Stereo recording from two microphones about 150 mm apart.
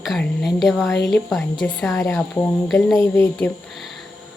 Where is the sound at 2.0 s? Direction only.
15° left (ahead or behind).